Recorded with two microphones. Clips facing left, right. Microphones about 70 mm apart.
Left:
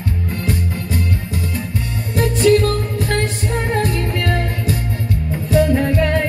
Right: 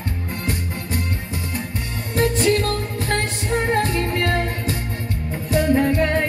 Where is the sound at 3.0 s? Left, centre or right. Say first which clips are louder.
Left 3 dB; right.